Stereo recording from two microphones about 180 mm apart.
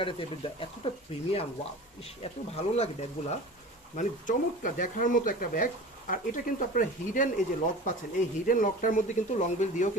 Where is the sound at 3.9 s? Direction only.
45° left (ahead or behind).